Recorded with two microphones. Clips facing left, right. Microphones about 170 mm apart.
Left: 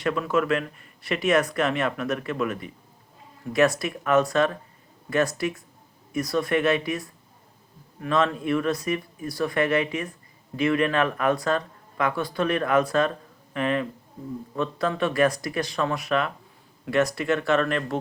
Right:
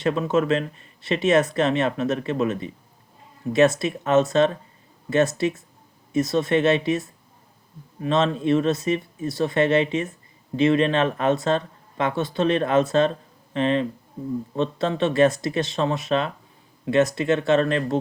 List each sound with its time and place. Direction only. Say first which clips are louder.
0.0 s speech: right 3 dB; 25° right (ahead or behind)